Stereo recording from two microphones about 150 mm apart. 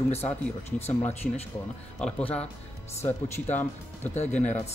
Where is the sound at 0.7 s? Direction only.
45° left (ahead or behind).